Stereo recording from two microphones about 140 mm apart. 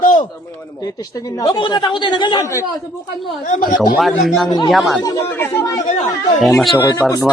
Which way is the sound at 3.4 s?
60° left (ahead or behind).